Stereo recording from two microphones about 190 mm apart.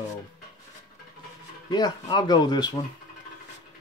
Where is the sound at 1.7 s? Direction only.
20° left (ahead or behind).